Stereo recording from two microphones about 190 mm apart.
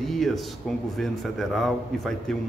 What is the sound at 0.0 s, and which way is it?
Speech, centre (ahead or behind).